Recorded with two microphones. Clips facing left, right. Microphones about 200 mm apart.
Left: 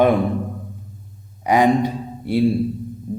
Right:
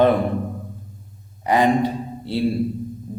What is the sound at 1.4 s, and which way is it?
Speech, 15° left (ahead or behind).